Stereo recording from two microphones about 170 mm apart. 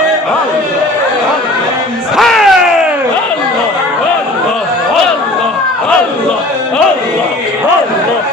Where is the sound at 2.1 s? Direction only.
Centre (ahead or behind).